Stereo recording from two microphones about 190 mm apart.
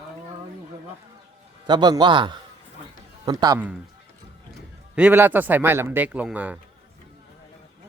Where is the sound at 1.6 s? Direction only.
20° right (ahead or behind).